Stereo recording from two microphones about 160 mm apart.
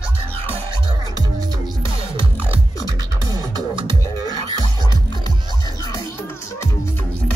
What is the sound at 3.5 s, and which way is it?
Music, 30° right (ahead or behind).